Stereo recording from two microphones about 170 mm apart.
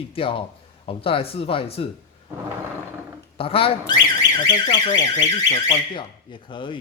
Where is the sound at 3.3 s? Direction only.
35° left (ahead or behind).